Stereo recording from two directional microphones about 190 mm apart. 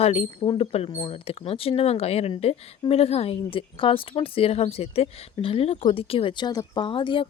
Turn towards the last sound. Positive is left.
turn(degrees=25)  # may be behind; listen again after turning